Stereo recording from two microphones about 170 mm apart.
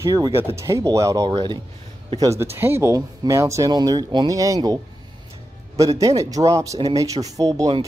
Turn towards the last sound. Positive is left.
turn(degrees=-20)  # may be behind; listen again after turning